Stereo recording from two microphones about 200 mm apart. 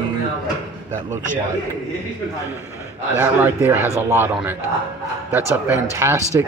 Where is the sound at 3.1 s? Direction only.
10° right (ahead or behind).